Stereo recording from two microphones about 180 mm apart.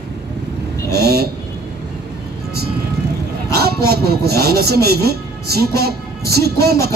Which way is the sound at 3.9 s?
60° right (ahead or behind).